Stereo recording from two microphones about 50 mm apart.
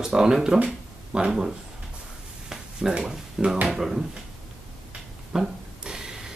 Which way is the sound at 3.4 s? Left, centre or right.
Centre.